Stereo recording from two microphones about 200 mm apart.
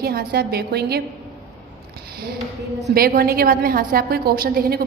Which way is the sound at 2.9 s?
50° right (ahead or behind).